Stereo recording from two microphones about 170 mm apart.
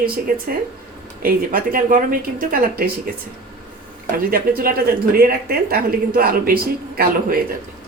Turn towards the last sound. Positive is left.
turn(degrees=-60)  # may be behind; listen again after turning